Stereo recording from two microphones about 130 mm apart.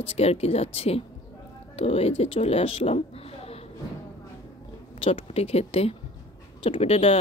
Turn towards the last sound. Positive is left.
turn(degrees=50)  # may be behind; listen again after turning